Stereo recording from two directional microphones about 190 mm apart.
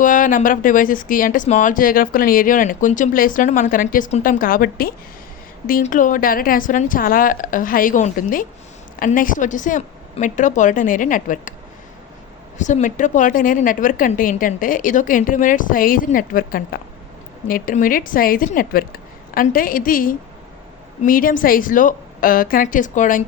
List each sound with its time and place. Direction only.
0.0 s speech: 45° left (ahead or behind)
12.5 s speech: 40° left (ahead or behind)